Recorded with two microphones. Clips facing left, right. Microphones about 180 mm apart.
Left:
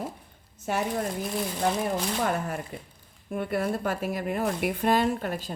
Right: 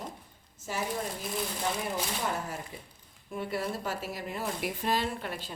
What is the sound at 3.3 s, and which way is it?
A woman's voice, 55° left (ahead or behind).